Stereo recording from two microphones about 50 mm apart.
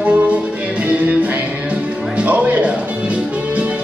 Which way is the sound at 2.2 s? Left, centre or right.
Right.